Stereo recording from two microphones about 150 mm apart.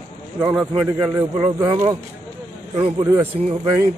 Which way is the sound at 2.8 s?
35° right (ahead or behind).